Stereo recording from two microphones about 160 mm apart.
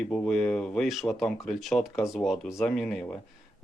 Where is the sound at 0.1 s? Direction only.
5° left (ahead or behind).